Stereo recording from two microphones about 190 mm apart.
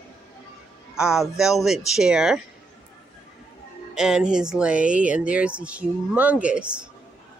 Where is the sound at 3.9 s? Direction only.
5° right (ahead or behind).